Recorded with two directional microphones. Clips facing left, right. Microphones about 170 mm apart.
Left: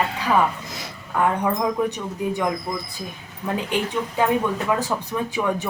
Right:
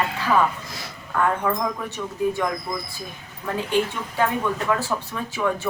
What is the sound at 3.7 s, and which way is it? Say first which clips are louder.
Speech: right 3 dB; 15° left (ahead or behind).